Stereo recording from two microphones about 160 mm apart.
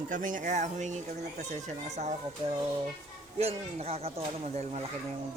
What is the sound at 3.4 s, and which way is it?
Speech, 40° right (ahead or behind).